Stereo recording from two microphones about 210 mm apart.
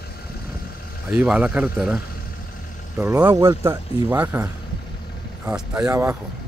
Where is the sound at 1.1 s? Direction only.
5° right (ahead or behind).